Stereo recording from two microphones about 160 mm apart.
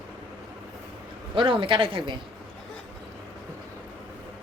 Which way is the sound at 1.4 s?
30° right (ahead or behind).